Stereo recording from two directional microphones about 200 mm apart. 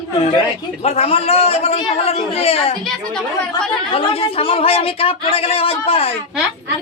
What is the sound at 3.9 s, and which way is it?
Speech, 25° left (ahead or behind).